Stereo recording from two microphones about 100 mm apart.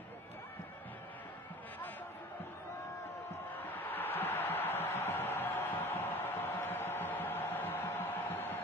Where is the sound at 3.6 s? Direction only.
20° left (ahead or behind).